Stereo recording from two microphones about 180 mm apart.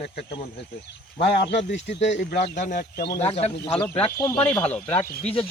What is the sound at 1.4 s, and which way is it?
Speech, 75° left (ahead or behind).